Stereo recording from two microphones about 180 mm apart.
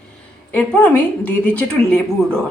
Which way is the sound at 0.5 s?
10° left (ahead or behind).